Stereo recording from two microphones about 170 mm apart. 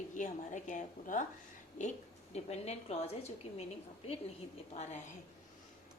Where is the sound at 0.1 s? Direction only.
45° left (ahead or behind).